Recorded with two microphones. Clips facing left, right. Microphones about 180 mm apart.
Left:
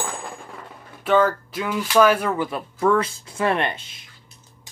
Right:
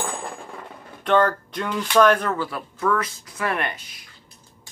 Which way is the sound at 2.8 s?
30° left (ahead or behind).